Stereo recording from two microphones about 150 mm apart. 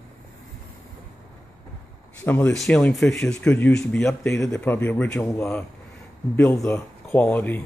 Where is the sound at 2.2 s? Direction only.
10° left (ahead or behind).